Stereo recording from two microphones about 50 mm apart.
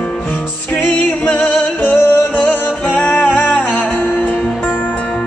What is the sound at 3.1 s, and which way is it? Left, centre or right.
Music, left.